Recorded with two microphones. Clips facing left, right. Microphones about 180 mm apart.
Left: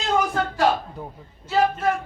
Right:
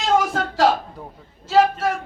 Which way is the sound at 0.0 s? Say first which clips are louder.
Right 2 dB; 90° right.